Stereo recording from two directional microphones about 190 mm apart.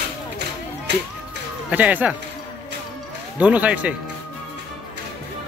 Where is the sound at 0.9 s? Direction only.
65° right (ahead or behind).